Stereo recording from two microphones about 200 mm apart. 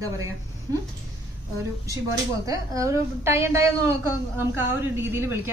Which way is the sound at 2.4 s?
15° right (ahead or behind).